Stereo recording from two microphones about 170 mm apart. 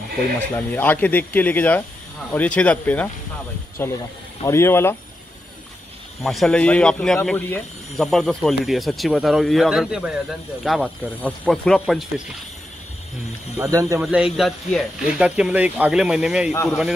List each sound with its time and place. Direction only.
0.6 s speech: 10° left (ahead or behind)
6.2 s speech: centre (ahead or behind)
13.6 s speech: 20° right (ahead or behind)
13.9 s speech: 5° right (ahead or behind)